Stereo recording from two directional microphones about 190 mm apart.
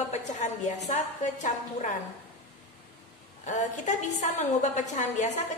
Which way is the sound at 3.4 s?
40° left (ahead or behind).